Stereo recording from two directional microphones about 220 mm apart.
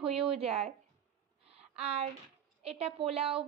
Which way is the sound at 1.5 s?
25° right (ahead or behind).